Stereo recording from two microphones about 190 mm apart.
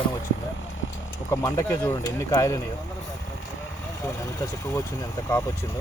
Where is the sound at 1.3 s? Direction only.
15° left (ahead or behind).